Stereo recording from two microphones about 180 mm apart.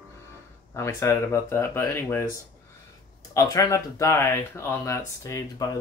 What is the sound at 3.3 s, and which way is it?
Speech, 20° left (ahead or behind).